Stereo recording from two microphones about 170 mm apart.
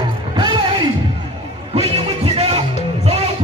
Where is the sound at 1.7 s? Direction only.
35° right (ahead or behind).